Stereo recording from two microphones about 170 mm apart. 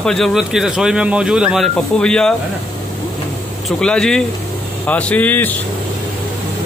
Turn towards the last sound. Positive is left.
turn(degrees=10)  # may be behind; listen again after turning